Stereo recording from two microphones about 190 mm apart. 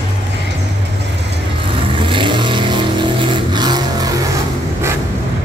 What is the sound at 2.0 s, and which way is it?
Vehicle, 25° right (ahead or behind).